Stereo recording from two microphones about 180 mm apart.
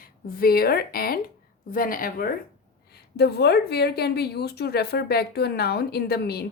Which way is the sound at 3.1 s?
65° left (ahead or behind).